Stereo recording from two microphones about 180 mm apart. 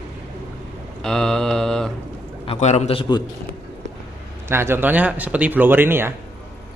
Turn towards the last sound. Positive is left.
turn(degrees=-10)  # may be behind; listen again after turning